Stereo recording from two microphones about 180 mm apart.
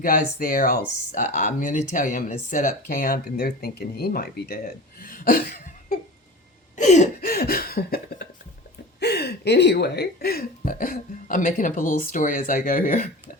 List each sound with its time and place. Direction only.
0.0 s speech: 50° left (ahead or behind)
6.7 s a sound: 40° left (ahead or behind)
7.2 s chuckle: 60° left (ahead or behind)
9.0 s speech: 65° left (ahead or behind); by 13.1 s 45° left (ahead or behind)